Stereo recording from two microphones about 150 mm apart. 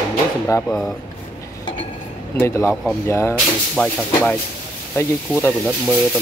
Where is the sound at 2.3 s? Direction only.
20° left (ahead or behind).